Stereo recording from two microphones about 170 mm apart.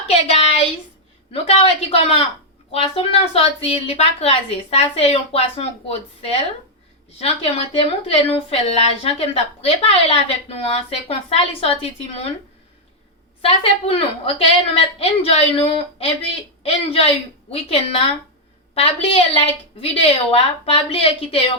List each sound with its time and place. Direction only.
0.1 s a sound: 35° left (ahead or behind)
1.3 s a woman's voice: 35° left (ahead or behind)
13.4 s a woman's voice: 35° left (ahead or behind)